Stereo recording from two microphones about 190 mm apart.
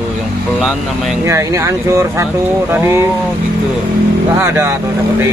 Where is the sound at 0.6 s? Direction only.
Centre (ahead or behind).